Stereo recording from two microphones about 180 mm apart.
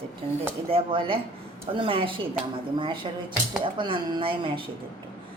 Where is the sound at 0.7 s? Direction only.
30° right (ahead or behind).